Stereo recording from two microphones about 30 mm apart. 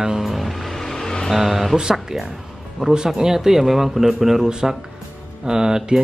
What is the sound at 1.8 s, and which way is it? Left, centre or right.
Music, right.